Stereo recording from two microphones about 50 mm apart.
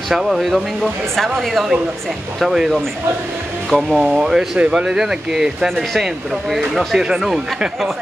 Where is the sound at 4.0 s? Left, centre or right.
Centre.